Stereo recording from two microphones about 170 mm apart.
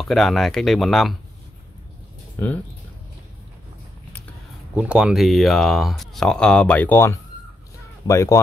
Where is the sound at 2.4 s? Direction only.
15° left (ahead or behind).